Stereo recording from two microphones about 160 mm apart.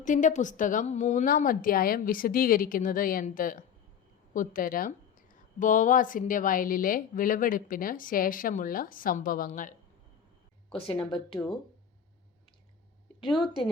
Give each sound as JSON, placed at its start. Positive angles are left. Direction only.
{"t": 0.0, "sound": "speech", "side_deg": 50}
{"t": 10.8, "sound": "speech", "side_deg": 35}